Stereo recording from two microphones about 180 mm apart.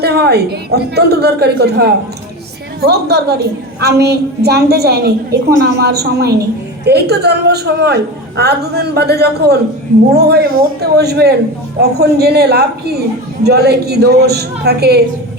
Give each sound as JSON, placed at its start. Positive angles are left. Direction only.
{"t": 0.0, "sound": "a woman's voice", "side_deg": -65}